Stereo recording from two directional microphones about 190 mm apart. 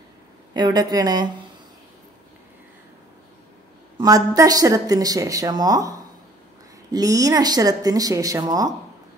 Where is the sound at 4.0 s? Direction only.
20° right (ahead or behind).